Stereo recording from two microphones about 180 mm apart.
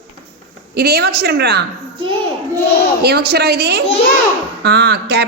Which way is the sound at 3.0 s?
65° right (ahead or behind).